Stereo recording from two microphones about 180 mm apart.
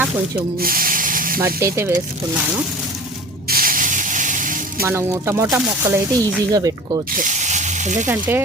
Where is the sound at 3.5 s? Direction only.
55° right (ahead or behind).